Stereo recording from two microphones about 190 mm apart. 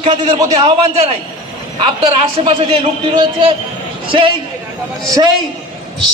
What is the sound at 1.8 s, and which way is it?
A man's voice, 25° right (ahead or behind).